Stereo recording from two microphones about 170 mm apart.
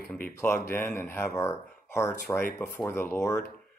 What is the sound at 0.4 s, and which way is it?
Speech, 10° left (ahead or behind).